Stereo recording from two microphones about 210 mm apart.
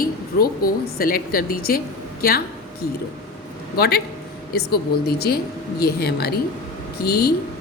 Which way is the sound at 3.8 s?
50° left (ahead or behind).